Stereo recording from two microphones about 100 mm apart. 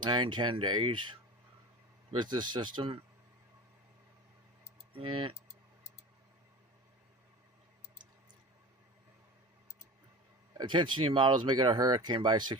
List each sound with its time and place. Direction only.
0.0 s speech: 50° right (ahead or behind)
4.9 s speech: 60° right (ahead or behind)
10.6 s speech: 50° right (ahead or behind)